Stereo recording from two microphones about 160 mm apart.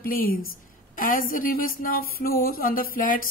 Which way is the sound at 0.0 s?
65° left (ahead or behind).